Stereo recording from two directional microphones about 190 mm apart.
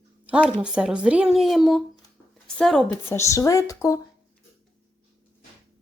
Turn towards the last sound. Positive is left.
turn(degrees=15)  # may be behind; listen again after turning